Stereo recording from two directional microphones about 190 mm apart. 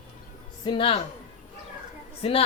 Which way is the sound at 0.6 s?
25° left (ahead or behind).